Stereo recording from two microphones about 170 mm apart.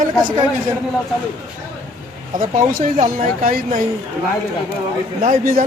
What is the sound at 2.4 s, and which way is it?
Speech, 50° right (ahead or behind).